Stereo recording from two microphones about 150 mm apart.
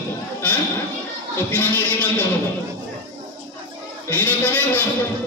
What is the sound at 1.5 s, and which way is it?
Speech, 10° left (ahead or behind).